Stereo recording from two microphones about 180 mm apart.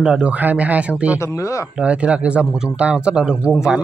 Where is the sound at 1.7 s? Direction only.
5° right (ahead or behind).